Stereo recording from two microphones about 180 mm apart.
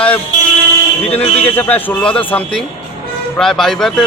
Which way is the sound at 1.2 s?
35° left (ahead or behind).